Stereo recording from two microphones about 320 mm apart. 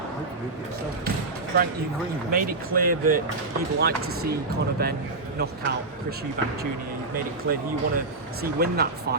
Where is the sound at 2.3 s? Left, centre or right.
Right.